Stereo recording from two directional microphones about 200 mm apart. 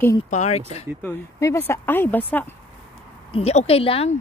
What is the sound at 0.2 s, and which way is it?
Speech, 35° left (ahead or behind).